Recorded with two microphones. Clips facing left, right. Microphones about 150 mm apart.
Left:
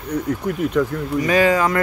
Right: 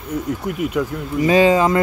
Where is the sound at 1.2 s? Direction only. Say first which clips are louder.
Right 3 dB; 25° right (ahead or behind).